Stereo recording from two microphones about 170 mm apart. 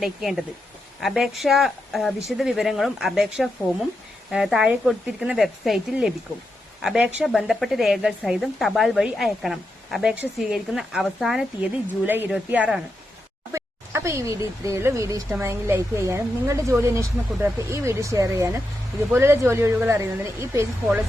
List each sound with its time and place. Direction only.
0.0 s a woman's voice: centre (ahead or behind); by 20.7 s 15° right (ahead or behind)